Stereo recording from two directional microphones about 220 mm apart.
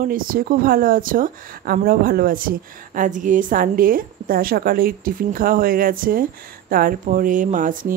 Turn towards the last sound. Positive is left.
turn(degrees=-35)  # may be behind; listen again after turning